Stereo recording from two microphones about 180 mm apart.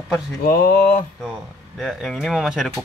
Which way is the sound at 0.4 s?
55° left (ahead or behind).